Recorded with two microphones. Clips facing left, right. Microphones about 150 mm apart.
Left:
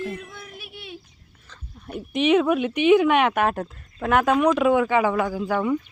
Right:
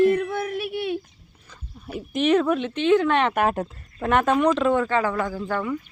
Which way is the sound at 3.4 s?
5° right (ahead or behind).